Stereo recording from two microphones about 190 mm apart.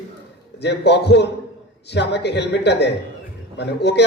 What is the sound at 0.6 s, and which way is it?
A man's voice, 65° left (ahead or behind).